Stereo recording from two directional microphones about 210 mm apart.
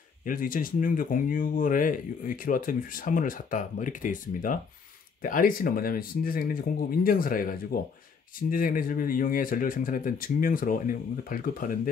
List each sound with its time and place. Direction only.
0.2 s speech: 40° left (ahead or behind)